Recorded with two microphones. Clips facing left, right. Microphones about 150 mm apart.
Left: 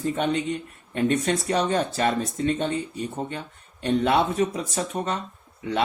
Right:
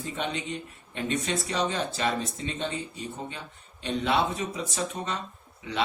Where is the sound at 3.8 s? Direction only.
50° left (ahead or behind).